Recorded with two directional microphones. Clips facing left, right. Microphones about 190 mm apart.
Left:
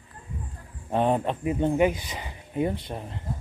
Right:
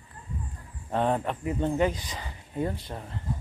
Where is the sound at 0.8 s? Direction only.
15° left (ahead or behind).